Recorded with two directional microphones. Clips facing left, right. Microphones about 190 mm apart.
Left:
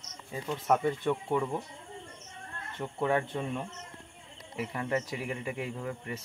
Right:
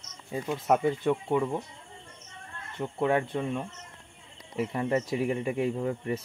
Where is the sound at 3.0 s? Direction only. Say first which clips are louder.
Right 3 dB; 15° right (ahead or behind).